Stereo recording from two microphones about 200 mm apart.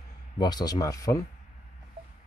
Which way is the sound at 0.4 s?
20° left (ahead or behind).